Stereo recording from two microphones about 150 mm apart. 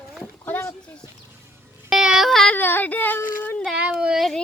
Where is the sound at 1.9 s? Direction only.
5° right (ahead or behind).